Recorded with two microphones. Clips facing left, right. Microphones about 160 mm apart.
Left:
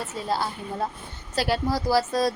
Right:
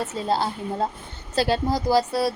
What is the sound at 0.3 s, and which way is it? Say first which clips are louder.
A woman's voice: right 3 dB; 25° right (ahead or behind).